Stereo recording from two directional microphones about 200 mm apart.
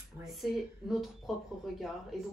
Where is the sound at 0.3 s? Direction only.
Centre (ahead or behind).